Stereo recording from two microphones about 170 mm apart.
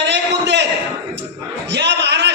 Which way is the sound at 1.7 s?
90° right.